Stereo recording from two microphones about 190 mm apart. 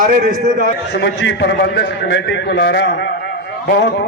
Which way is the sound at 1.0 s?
65° left (ahead or behind).